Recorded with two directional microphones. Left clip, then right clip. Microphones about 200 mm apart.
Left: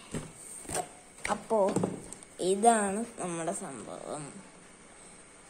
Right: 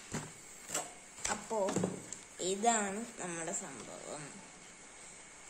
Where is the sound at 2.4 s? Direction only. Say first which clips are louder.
Left 8 dB; 30° left (ahead or behind).